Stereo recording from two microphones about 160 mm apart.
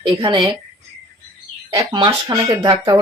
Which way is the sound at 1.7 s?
25° right (ahead or behind).